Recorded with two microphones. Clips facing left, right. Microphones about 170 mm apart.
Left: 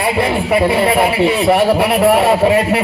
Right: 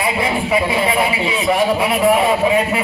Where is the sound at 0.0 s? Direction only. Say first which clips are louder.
Left 3 dB; 60° left (ahead or behind).